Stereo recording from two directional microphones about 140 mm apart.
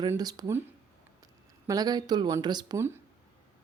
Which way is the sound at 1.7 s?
30° right (ahead or behind).